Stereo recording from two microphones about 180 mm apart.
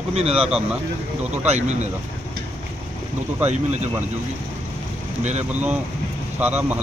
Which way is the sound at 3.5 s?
40° right (ahead or behind).